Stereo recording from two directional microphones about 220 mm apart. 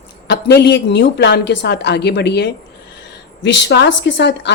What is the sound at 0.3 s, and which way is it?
Speech, 50° left (ahead or behind).